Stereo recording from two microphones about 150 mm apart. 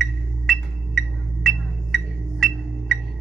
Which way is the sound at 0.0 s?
Centre (ahead or behind).